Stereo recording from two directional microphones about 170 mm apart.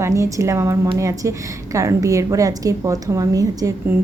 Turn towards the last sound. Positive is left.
turn(degrees=-20)  # may be behind; listen again after turning